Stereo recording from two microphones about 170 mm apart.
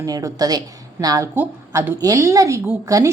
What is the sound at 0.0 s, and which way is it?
A woman's voice, 20° right (ahead or behind).